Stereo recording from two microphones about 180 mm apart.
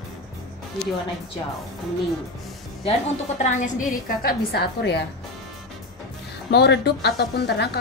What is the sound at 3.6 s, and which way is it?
A woman's voice, 50° left (ahead or behind).